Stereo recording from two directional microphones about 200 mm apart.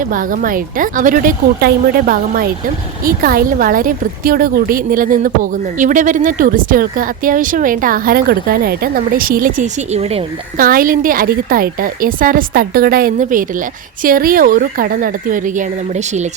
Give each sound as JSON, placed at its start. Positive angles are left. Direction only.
{"t": 0.0, "sound": "a woman's voice", "side_deg": -45}
{"t": 10.6, "sound": "a woman's voice", "side_deg": -45}